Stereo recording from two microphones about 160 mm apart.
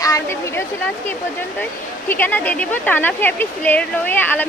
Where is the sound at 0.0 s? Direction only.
20° left (ahead or behind).